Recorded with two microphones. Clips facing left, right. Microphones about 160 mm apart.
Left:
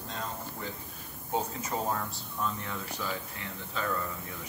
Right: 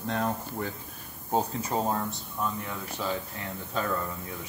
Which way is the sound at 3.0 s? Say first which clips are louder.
Right 5 dB; 25° right (ahead or behind).